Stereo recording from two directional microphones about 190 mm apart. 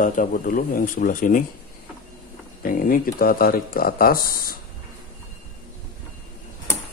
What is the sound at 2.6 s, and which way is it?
Speech, 50° left (ahead or behind).